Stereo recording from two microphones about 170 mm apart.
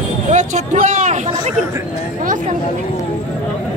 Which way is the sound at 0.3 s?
45° right (ahead or behind).